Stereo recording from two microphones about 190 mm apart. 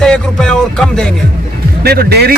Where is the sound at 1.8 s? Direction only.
55° right (ahead or behind).